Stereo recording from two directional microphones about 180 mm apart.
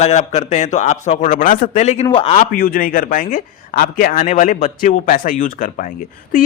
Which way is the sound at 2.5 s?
55° left (ahead or behind).